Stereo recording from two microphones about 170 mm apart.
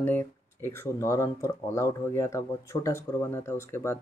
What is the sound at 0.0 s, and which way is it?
Speech, 15° left (ahead or behind).